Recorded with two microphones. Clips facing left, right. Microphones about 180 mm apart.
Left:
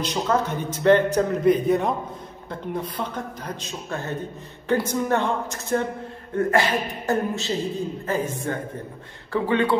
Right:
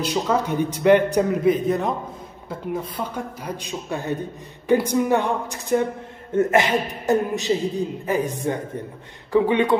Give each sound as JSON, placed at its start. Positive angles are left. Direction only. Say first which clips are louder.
{"t": 0.0, "sound": "speech", "louder": "right 1 dB", "side_deg": -10}
{"t": 1.4, "sound": "a man's voice", "louder": "left 1 dB", "side_deg": 0}